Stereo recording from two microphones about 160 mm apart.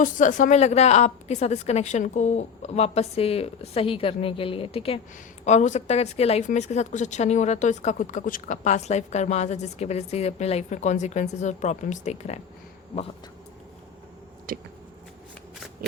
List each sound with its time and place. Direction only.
0.0 s a woman's voice: 50° left (ahead or behind); by 4.9 s 35° left (ahead or behind)
5.5 s a woman's voice: 45° left (ahead or behind)
14.5 s a sound: 60° right (ahead or behind)